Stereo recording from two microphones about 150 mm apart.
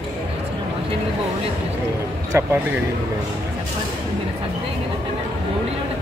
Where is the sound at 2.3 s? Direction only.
15° right (ahead or behind).